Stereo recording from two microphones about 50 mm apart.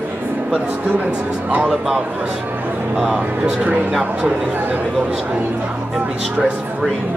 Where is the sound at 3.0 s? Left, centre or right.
Right.